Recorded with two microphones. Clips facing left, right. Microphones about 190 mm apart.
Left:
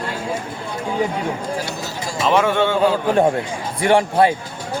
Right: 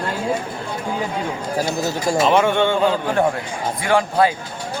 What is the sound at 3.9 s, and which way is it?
Speech, 25° left (ahead or behind).